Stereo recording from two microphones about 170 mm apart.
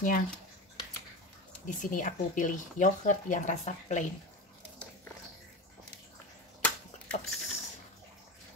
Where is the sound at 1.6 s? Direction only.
50° left (ahead or behind).